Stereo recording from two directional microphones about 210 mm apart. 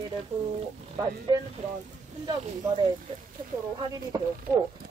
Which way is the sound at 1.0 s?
15° right (ahead or behind).